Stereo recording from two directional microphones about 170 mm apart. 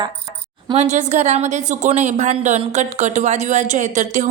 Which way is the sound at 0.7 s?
45° right (ahead or behind).